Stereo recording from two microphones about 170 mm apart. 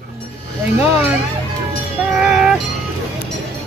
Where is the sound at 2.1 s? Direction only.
5° right (ahead or behind).